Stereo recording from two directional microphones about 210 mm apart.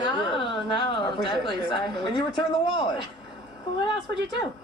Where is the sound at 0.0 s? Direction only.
20° left (ahead or behind).